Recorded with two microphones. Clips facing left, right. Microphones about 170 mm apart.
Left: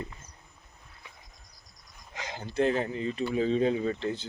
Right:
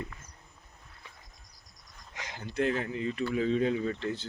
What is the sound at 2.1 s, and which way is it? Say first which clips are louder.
Speech: left 3 dB; 30° left (ahead or behind).